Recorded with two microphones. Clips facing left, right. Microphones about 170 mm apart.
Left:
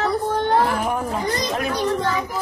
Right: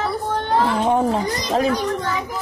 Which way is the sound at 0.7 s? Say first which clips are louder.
Right 5 dB; 25° right (ahead or behind).